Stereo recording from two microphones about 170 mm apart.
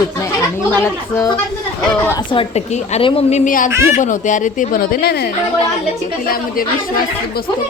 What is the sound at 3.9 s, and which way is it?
A woman's voice, 50° left (ahead or behind).